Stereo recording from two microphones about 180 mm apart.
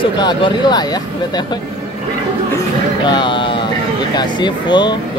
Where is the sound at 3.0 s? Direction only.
25° left (ahead or behind).